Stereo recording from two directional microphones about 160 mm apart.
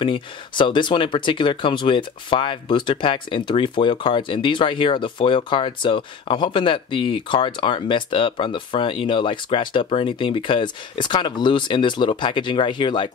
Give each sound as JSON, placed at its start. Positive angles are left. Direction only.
{"t": 0.0, "sound": "speech", "side_deg": 30}